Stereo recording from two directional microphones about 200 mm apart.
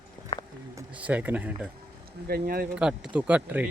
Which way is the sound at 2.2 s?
50° right (ahead or behind).